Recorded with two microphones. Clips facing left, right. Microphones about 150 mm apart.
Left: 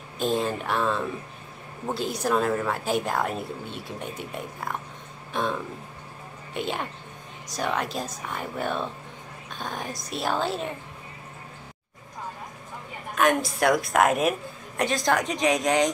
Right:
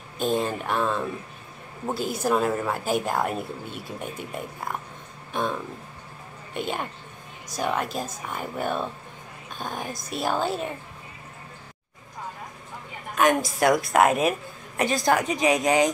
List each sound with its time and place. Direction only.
0.2 s speech: centre (ahead or behind)
2.1 s speech: 5° right (ahead or behind)
13.1 s speech: centre (ahead or behind)